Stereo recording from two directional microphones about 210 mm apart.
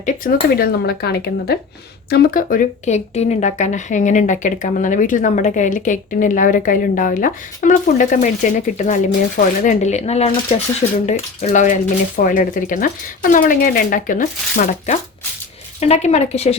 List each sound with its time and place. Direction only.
0.5 s speech: 45° left (ahead or behind); by 16.6 s 30° left (ahead or behind)